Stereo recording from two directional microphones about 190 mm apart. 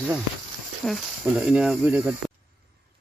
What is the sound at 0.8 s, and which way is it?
Speech, centre (ahead or behind).